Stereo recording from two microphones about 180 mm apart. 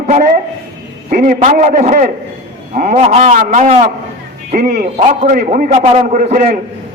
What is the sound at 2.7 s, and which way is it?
A man's voice, 40° right (ahead or behind).